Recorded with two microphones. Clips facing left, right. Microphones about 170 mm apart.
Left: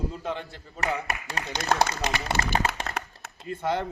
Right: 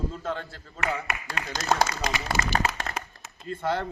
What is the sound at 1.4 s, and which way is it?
Speech, 40° left (ahead or behind).